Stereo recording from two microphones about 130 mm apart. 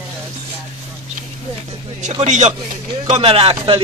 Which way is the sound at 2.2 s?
60° right (ahead or behind).